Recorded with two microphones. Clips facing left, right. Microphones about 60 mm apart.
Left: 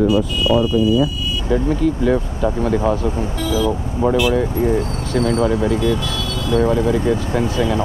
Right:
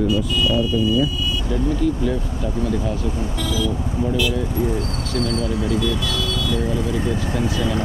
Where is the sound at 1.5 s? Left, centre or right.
Left.